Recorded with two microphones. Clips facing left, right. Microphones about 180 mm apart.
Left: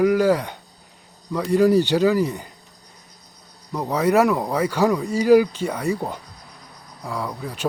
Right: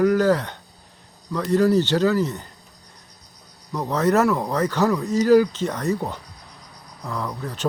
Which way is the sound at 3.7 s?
10° left (ahead or behind).